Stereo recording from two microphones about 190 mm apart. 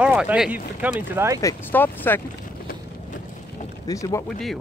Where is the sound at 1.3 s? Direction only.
15° left (ahead or behind).